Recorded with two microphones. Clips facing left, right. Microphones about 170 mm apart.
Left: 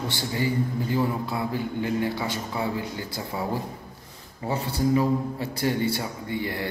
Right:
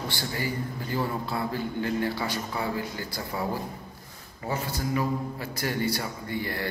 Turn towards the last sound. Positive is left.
turn(degrees=20)  # may be behind; listen again after turning